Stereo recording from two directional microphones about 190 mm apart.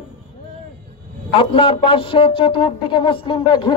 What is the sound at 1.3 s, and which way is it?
A man's voice, 30° left (ahead or behind).